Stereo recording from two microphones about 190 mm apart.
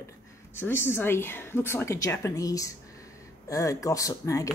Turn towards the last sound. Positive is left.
turn(degrees=15)  # may be behind; listen again after turning